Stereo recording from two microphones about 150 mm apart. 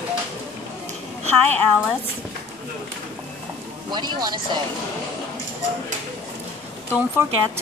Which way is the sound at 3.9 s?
30° right (ahead or behind).